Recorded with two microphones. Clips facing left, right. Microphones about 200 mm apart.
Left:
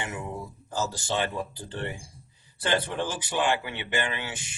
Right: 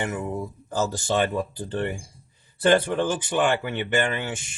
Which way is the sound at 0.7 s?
55° right (ahead or behind).